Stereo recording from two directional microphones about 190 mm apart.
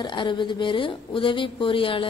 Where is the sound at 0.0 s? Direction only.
25° left (ahead or behind).